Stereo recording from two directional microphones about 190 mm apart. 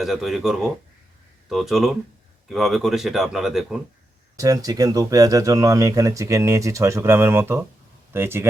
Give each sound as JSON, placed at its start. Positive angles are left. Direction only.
{"t": 0.0, "sound": "speech", "side_deg": 0}
{"t": 4.4, "sound": "speech", "side_deg": -15}